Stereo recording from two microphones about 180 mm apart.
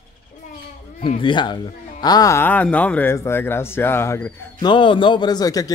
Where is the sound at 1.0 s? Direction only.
25° left (ahead or behind).